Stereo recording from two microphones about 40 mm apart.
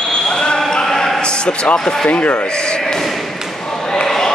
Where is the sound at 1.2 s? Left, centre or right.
Left.